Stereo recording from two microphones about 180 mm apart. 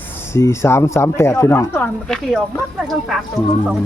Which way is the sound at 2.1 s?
Centre (ahead or behind).